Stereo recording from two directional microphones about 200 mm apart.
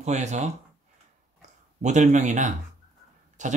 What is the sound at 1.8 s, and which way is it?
Speech, 35° right (ahead or behind).